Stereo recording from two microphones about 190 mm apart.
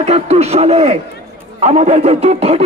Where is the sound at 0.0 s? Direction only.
35° right (ahead or behind).